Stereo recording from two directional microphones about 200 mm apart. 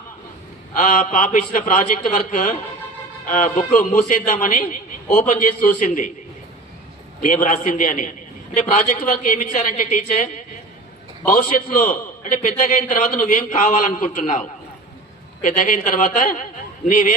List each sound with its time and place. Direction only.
0.8 s a man's voice: 40° left (ahead or behind)
7.2 s a man's voice: 40° left (ahead or behind)